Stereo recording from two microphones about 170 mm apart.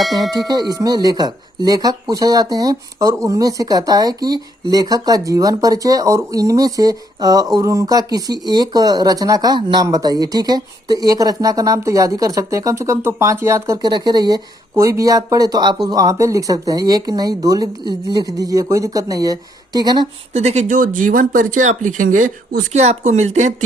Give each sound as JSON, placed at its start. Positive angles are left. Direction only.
{"t": 0.3, "sound": "speech", "side_deg": -25}
{"t": 20.3, "sound": "speech", "side_deg": -40}